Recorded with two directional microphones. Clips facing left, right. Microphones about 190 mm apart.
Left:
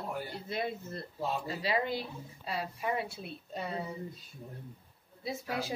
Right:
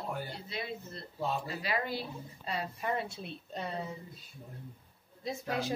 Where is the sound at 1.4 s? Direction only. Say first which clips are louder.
Left 3 dB; 25° left (ahead or behind).